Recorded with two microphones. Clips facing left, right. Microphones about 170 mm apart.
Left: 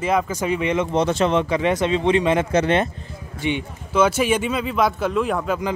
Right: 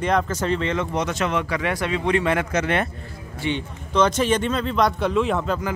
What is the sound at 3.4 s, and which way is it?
Speech, 15° left (ahead or behind).